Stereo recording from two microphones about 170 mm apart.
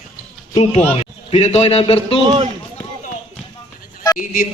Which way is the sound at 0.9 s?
40° left (ahead or behind).